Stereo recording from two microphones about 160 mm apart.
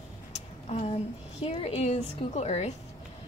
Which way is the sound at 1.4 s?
40° left (ahead or behind).